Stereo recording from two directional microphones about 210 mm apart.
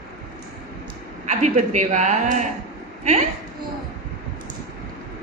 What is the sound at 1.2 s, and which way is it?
A woman's voice, 35° right (ahead or behind).